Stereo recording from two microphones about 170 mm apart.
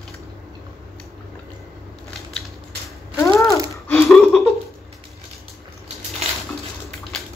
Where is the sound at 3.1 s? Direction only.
15° left (ahead or behind).